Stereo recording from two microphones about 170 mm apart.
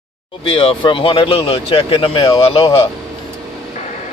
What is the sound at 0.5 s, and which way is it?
Speech, 30° left (ahead or behind).